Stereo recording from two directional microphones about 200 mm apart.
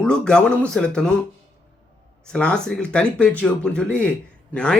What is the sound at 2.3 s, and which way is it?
Speech, 5° left (ahead or behind).